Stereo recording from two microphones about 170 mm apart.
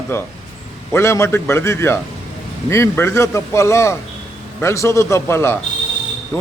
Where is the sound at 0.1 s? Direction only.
15° left (ahead or behind).